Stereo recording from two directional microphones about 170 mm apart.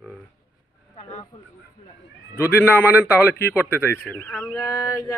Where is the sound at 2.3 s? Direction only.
15° left (ahead or behind).